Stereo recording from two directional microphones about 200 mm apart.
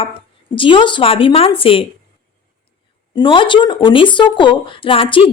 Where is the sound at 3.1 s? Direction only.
25° left (ahead or behind).